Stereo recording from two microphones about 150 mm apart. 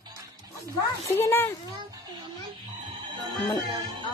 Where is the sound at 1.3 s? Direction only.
15° left (ahead or behind).